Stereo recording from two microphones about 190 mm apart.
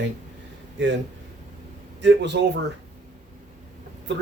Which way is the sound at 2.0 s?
70° right (ahead or behind).